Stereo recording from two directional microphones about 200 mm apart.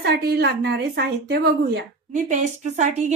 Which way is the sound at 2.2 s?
35° right (ahead or behind).